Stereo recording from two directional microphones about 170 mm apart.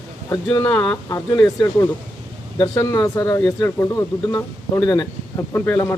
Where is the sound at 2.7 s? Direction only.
20° left (ahead or behind).